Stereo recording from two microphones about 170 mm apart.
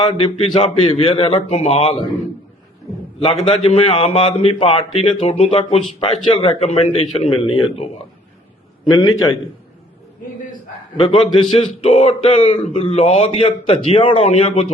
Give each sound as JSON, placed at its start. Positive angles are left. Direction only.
{"t": 0.0, "sound": "a man's voice", "side_deg": 30}
{"t": 3.2, "sound": "a man's voice", "side_deg": 35}
{"t": 8.9, "sound": "a man's voice", "side_deg": 20}
{"t": 11.0, "sound": "a man's voice", "side_deg": 30}